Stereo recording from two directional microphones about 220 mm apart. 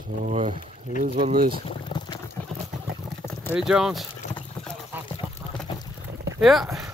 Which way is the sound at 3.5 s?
5° right (ahead or behind).